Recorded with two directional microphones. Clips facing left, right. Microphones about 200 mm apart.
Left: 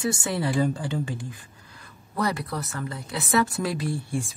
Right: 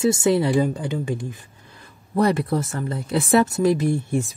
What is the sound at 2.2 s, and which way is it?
Speech, 30° right (ahead or behind).